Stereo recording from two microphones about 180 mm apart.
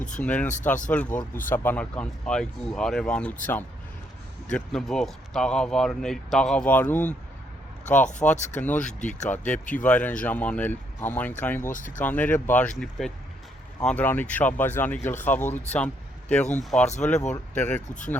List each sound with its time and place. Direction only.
0.2 s speech: 10° left (ahead or behind)
7.9 s speech: 45° left (ahead or behind)
8.3 s speech: 10° left (ahead or behind)
8.9 s speech: 40° left (ahead or behind)
9.3 s speech: 10° left (ahead or behind)